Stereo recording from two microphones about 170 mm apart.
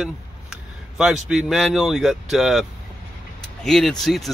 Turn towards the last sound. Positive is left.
turn(degrees=0)  # may be behind; listen again after turning